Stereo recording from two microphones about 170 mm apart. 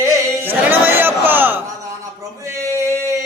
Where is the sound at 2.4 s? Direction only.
15° right (ahead or behind).